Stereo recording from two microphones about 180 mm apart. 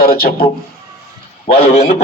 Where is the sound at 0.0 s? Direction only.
55° left (ahead or behind).